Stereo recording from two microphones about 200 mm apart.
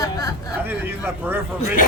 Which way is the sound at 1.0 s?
10° right (ahead or behind).